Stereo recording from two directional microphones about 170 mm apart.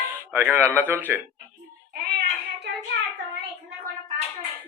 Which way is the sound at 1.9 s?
65° right (ahead or behind).